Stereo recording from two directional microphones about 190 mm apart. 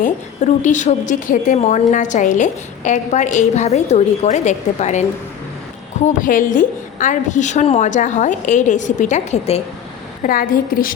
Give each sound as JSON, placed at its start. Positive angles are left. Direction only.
{"t": 0.0, "sound": "a woman's voice", "side_deg": 40}
{"t": 6.1, "sound": "a woman's voice", "side_deg": 45}
{"t": 10.2, "sound": "a woman's voice", "side_deg": 45}